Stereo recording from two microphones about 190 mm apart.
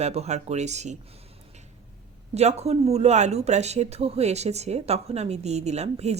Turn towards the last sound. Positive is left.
turn(degrees=-35)  # may be behind; listen again after turning